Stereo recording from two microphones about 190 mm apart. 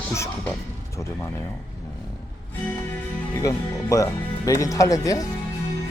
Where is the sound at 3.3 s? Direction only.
15° left (ahead or behind).